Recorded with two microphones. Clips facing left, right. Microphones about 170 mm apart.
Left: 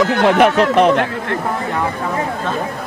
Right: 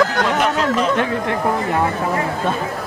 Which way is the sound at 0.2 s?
60° left (ahead or behind).